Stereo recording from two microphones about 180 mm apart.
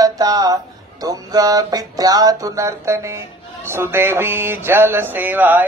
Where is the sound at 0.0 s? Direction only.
20° right (ahead or behind).